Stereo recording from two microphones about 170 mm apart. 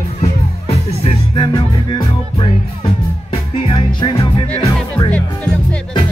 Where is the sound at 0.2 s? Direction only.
35° left (ahead or behind).